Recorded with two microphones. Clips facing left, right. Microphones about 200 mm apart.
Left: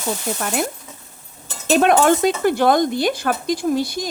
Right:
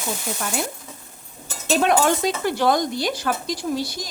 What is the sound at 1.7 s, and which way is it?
Speech, 50° left (ahead or behind).